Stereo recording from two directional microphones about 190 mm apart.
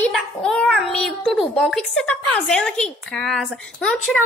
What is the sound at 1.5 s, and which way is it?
A woman's voice, centre (ahead or behind).